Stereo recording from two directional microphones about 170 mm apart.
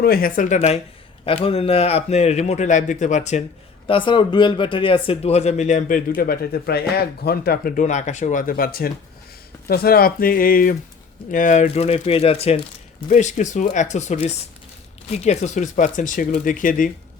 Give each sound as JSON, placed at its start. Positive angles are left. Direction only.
{"t": 0.0, "sound": "a man's voice", "side_deg": 60}
{"t": 3.8, "sound": "a man's voice", "side_deg": 30}
{"t": 13.1, "sound": "speech", "side_deg": 45}